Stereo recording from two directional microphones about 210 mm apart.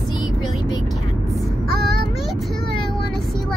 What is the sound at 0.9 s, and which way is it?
Vehicle, centre (ahead or behind).